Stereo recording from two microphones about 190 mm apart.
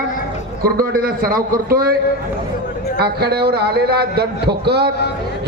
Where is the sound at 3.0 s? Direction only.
55° right (ahead or behind).